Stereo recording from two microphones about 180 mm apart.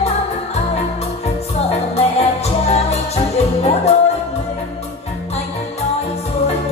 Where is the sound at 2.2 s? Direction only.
35° left (ahead or behind).